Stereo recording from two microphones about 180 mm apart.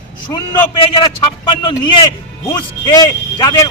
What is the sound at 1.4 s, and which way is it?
A man's voice, 25° left (ahead or behind).